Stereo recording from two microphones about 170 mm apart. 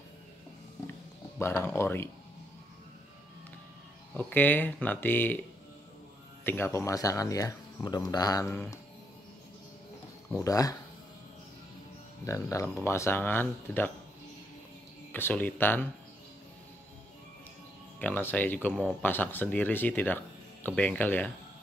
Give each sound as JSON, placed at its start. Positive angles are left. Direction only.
{"t": 1.4, "sound": "speech", "side_deg": 15}
{"t": 4.1, "sound": "speech", "side_deg": 10}
{"t": 6.4, "sound": "speech", "side_deg": 10}
{"t": 10.4, "sound": "speech", "side_deg": 20}
{"t": 12.3, "sound": "speech", "side_deg": 15}
{"t": 15.1, "sound": "speech", "side_deg": 10}
{"t": 17.9, "sound": "speech", "side_deg": 10}